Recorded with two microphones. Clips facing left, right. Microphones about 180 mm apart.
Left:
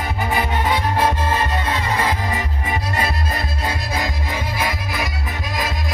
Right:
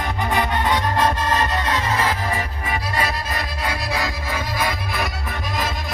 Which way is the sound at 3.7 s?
20° left (ahead or behind).